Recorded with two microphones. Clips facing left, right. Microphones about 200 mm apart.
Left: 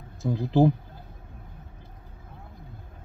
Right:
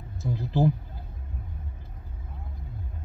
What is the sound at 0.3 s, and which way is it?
Speech, 20° left (ahead or behind).